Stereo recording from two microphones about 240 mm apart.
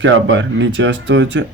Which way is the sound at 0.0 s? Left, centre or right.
Right.